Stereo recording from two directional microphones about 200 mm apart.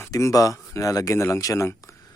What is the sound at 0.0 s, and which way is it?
Speech, 15° left (ahead or behind).